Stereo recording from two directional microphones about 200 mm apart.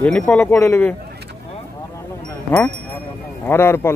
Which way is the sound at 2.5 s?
5° left (ahead or behind).